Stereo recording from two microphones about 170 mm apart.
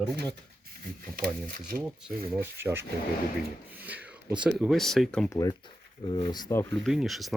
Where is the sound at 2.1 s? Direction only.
60° right (ahead or behind).